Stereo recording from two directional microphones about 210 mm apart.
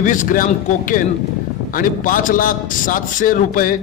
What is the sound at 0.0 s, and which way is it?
A man's voice, 40° left (ahead or behind).